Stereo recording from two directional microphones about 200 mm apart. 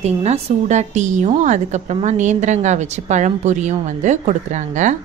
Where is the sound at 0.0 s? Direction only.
35° right (ahead or behind).